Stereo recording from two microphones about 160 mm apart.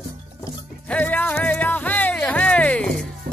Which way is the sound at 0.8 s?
10° left (ahead or behind).